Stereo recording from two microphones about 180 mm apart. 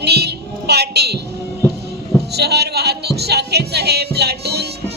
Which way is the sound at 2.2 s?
65° right (ahead or behind).